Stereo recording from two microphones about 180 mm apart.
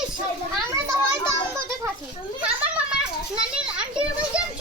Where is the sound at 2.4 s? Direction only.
5° right (ahead or behind).